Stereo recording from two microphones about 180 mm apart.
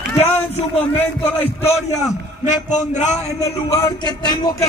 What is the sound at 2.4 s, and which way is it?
Speech, 40° left (ahead or behind).